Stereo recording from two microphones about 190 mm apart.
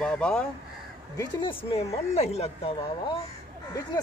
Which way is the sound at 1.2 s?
25° left (ahead or behind).